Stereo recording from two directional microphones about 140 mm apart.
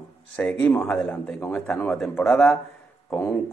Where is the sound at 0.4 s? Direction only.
10° left (ahead or behind).